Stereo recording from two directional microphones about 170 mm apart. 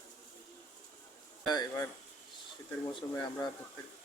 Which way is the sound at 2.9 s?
30° left (ahead or behind).